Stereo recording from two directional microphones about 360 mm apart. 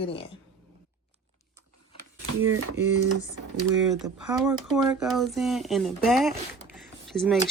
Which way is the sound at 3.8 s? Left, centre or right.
Centre.